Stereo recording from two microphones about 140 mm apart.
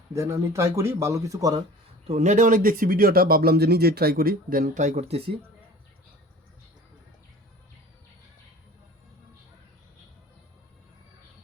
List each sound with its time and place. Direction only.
0.1 s speech: 20° right (ahead or behind)
2.0 s speech: 60° right (ahead or behind)